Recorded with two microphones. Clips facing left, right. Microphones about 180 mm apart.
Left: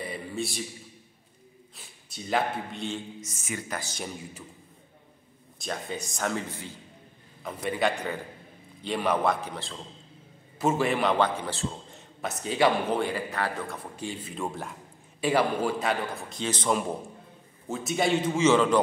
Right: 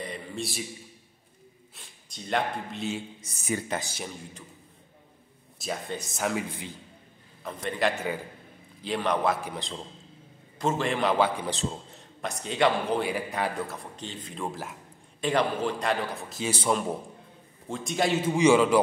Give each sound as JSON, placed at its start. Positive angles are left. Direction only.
{"t": 0.0, "sound": "a sound", "side_deg": 5}
{"t": 1.8, "sound": "a man's voice", "side_deg": 5}
{"t": 3.2, "sound": "speech", "side_deg": -35}
{"t": 3.8, "sound": "a man's voice", "side_deg": -5}
{"t": 5.6, "sound": "a man's voice", "side_deg": 0}
{"t": 7.4, "sound": "a man's voice", "side_deg": 5}
{"t": 7.9, "sound": "a man's voice", "side_deg": -5}
{"t": 9.4, "sound": "a man's voice", "side_deg": -15}
{"t": 10.6, "sound": "a man's voice", "side_deg": 5}
{"t": 11.9, "sound": "a man's voice", "side_deg": 5}
{"t": 13.0, "sound": "a man's voice", "side_deg": -15}
{"t": 13.9, "sound": "a man's voice", "side_deg": 10}
{"t": 17.6, "sound": "a man's voice", "side_deg": 5}
{"t": 18.3, "sound": "a man's voice", "side_deg": -10}